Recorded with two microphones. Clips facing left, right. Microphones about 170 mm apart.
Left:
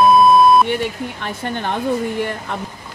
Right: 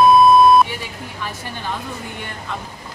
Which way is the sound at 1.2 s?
60° left (ahead or behind).